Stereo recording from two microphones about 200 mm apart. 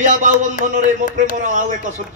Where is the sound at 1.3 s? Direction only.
40° right (ahead or behind).